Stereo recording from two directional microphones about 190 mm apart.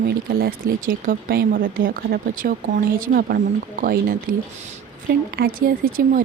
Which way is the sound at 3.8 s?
50° right (ahead or behind).